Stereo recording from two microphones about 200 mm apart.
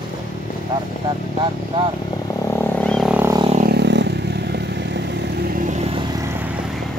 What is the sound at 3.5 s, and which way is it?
Motorcycle, 50° right (ahead or behind).